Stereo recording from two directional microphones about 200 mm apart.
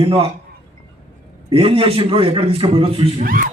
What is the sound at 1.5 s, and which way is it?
Speech, 30° right (ahead or behind).